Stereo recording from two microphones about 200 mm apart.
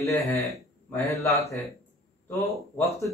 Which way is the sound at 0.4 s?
Centre (ahead or behind).